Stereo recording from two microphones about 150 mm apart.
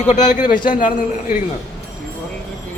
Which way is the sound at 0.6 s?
65° left (ahead or behind).